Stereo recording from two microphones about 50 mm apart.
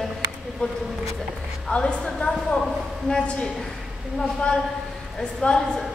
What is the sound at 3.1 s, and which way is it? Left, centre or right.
Speech, left.